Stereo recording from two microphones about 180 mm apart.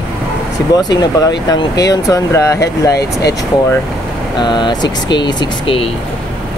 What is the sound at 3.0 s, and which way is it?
Speech, 65° left (ahead or behind).